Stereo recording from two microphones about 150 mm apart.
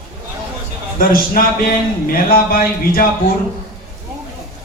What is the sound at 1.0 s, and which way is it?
Speech, 75° left (ahead or behind).